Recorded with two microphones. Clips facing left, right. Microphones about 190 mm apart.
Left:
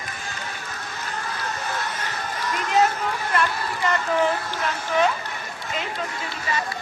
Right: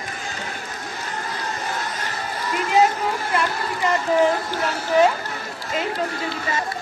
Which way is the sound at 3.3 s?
15° right (ahead or behind).